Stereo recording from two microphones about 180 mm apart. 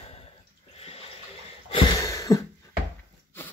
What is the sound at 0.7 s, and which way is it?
Water, 35° left (ahead or behind).